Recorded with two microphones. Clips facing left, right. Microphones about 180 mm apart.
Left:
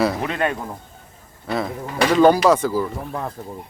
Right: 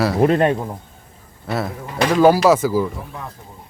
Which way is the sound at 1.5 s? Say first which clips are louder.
Even; 5° right (ahead or behind).